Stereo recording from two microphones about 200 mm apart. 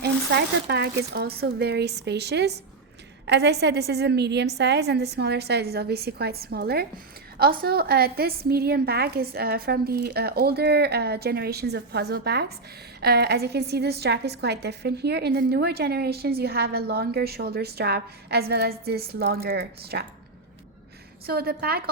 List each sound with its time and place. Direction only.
0.0 s a woman's voice: 55° right (ahead or behind)
21.2 s a woman's voice: 50° right (ahead or behind)